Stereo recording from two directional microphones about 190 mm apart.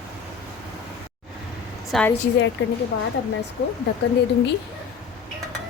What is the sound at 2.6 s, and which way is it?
Speech, 65° left (ahead or behind).